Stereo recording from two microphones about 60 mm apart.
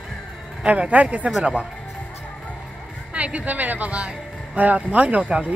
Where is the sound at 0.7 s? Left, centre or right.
Right.